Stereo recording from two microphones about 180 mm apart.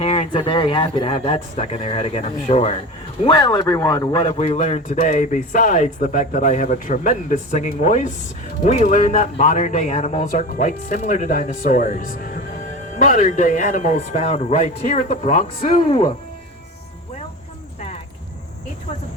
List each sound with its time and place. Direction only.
0.0 s speech: 35° left (ahead or behind)
4.2 s speech: 35° left (ahead or behind)
17.7 s a sound: 35° left (ahead or behind)